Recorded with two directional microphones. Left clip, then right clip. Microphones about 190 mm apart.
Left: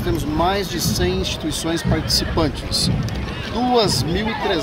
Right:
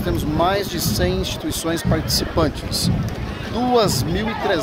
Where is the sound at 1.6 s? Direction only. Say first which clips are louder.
Right 1 dB; 20° right (ahead or behind).